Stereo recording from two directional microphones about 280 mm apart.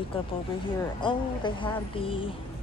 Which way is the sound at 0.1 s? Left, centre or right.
Centre.